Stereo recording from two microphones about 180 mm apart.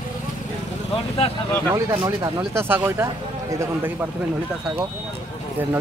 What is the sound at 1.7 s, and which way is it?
Speech, 20° right (ahead or behind).